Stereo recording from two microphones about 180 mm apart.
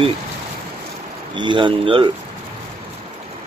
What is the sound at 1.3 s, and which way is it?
Speech, 25° right (ahead or behind).